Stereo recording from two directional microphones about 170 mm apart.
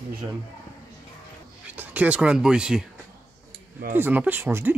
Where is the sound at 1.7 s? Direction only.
10° right (ahead or behind).